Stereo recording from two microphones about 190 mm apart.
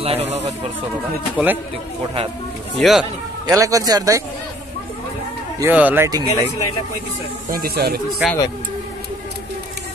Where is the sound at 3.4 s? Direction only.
20° right (ahead or behind).